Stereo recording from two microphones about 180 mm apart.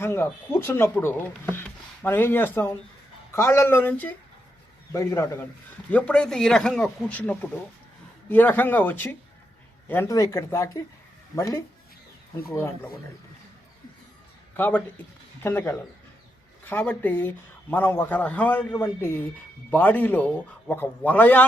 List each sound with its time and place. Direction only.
0.0 s speech: 15° left (ahead or behind)
14.5 s speech: 10° left (ahead or behind)